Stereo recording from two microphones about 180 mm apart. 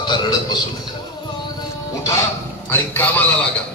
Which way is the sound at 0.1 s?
25° left (ahead or behind).